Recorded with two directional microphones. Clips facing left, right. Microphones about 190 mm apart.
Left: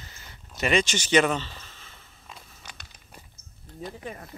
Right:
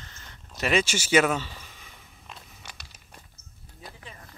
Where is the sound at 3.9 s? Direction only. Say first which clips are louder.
Left 9 dB; 45° left (ahead or behind).